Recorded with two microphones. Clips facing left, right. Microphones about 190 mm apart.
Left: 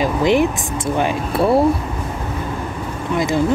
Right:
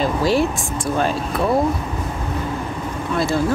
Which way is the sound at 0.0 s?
15° left (ahead or behind).